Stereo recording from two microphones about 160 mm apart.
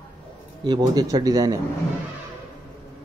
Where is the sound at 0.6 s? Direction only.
25° right (ahead or behind).